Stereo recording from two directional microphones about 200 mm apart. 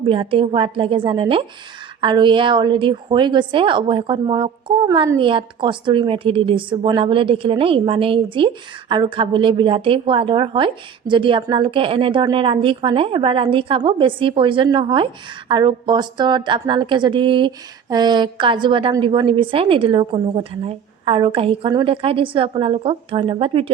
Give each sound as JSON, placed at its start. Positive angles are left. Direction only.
{"t": 0.0, "sound": "a woman's voice", "side_deg": -25}